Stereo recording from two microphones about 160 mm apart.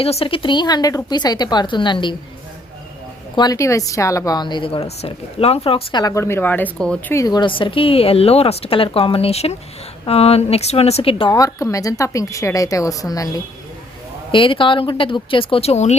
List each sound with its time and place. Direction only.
0.0 s a woman's voice: 40° left (ahead or behind)
3.3 s a woman's voice: 25° left (ahead or behind); by 7.0 s 5° left (ahead or behind)
7.1 s a woman's voice: 20° left (ahead or behind); by 16.0 s 45° left (ahead or behind)